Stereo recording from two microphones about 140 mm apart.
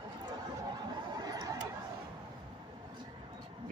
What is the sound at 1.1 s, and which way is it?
Chatter, 25° right (ahead or behind).